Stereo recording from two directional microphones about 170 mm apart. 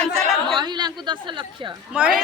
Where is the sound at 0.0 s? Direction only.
5° left (ahead or behind).